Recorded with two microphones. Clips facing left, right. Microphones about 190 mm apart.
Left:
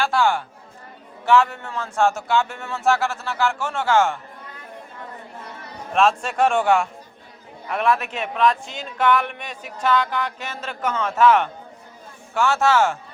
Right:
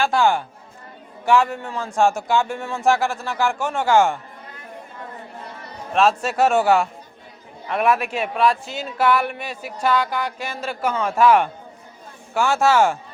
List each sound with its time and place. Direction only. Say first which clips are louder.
0.0 s a man's voice: right 2 dB; 15° right (ahead or behind)
5.9 s a man's voice: right 1 dB; 5° right (ahead or behind)